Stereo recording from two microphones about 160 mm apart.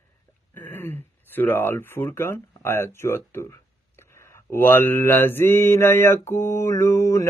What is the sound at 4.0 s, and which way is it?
Mantra, 15° left (ahead or behind).